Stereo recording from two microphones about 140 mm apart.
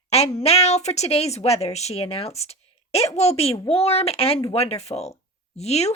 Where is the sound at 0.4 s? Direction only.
45° left (ahead or behind).